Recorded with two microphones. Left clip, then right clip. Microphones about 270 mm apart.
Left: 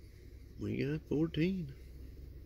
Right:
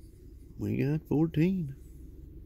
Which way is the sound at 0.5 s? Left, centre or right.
Right.